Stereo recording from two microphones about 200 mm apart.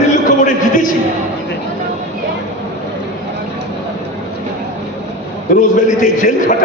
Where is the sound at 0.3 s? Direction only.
40° left (ahead or behind).